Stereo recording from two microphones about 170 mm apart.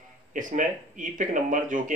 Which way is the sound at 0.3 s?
50° right (ahead or behind).